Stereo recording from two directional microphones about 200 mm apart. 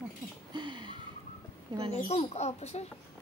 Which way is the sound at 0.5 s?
25° right (ahead or behind).